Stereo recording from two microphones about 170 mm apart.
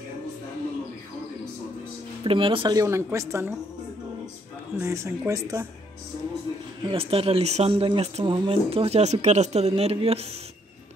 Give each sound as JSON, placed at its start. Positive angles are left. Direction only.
{"t": 2.2, "sound": "a woman's voice", "side_deg": -30}
{"t": 4.7, "sound": "speech", "side_deg": -15}
{"t": 6.8, "sound": "speech", "side_deg": -30}